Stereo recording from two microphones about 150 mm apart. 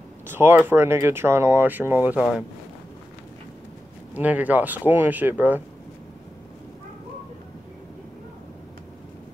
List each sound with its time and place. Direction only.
0.3 s speech: 15° right (ahead or behind)
4.1 s speech: 10° right (ahead or behind)